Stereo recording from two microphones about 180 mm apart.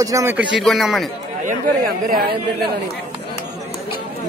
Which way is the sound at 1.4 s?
55° right (ahead or behind).